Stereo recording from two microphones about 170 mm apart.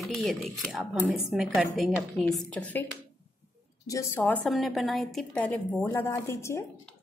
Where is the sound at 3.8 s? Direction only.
20° left (ahead or behind).